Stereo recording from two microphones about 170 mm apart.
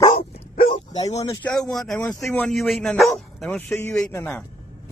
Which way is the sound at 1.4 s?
Centre (ahead or behind).